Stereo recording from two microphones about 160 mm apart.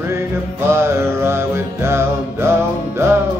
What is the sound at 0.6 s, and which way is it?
Music, 15° right (ahead or behind).